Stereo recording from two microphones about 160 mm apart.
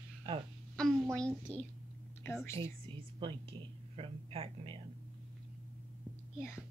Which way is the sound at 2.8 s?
30° right (ahead or behind).